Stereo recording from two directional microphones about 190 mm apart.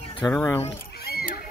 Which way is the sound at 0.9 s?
55° left (ahead or behind).